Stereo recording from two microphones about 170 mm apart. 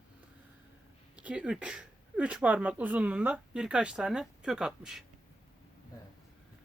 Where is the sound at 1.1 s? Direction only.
5° right (ahead or behind).